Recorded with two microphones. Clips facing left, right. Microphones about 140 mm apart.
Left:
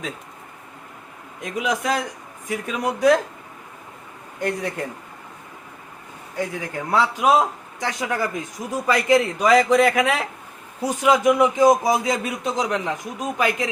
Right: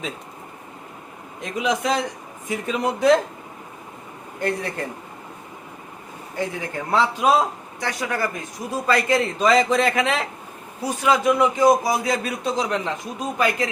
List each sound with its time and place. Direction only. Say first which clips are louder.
1.8 s a man's voice: right 1 dB; 5° left (ahead or behind)
4.4 s speech: even; 15° left (ahead or behind)
6.4 s speech: even; 10° left (ahead or behind)